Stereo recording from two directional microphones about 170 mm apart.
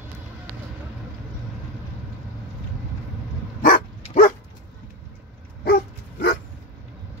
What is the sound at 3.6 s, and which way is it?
Dog, 55° left (ahead or behind).